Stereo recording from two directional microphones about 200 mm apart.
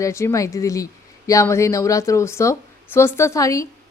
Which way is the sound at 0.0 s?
15° left (ahead or behind).